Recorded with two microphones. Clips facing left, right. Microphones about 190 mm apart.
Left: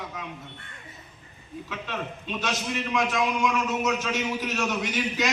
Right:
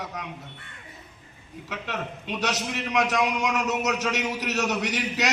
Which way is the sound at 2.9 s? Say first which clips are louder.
Right 2 dB; 70° right (ahead or behind).